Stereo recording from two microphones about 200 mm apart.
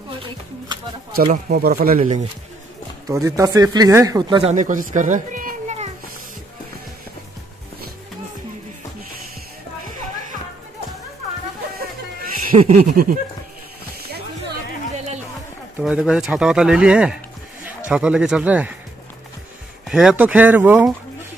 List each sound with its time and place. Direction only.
1.1 s speech: 45° right (ahead or behind)
3.1 s speech: 15° right (ahead or behind); by 5.9 s 40° right (ahead or behind)
12.4 s speech: 40° right (ahead or behind)
15.8 s speech: 5° right (ahead or behind)
19.9 s speech: 5° right (ahead or behind)